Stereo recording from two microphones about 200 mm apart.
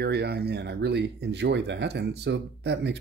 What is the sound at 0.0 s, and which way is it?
Speech, 55° right (ahead or behind).